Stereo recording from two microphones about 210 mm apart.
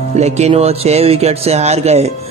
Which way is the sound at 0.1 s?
30° right (ahead or behind).